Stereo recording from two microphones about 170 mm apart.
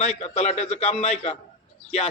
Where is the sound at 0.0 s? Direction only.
40° left (ahead or behind).